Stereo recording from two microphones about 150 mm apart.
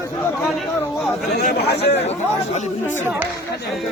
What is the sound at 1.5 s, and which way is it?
Speech, 90° left.